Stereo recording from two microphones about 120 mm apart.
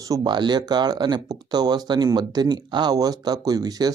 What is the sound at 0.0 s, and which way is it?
Speech, 35° right (ahead or behind).